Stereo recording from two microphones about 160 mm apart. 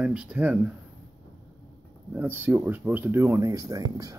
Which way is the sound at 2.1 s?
10° right (ahead or behind).